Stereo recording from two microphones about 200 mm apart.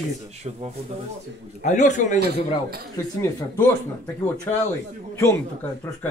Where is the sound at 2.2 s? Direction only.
50° right (ahead or behind).